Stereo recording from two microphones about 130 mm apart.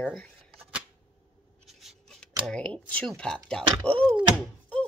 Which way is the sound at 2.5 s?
10° left (ahead or behind).